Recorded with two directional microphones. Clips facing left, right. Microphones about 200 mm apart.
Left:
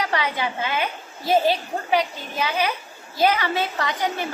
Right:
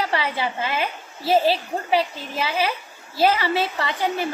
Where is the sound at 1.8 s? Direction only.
5° right (ahead or behind).